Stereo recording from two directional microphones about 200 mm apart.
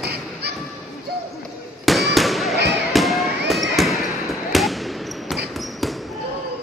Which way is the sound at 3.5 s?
Centre (ahead or behind).